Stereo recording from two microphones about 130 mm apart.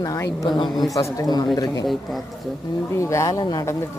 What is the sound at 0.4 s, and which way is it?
Speech, 35° left (ahead or behind).